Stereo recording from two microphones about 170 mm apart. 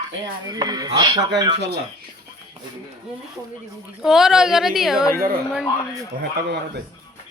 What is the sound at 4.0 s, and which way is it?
A woman's voice, centre (ahead or behind).